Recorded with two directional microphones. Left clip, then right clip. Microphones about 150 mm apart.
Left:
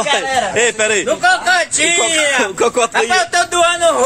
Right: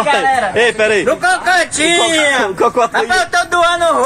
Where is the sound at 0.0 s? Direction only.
Centre (ahead or behind).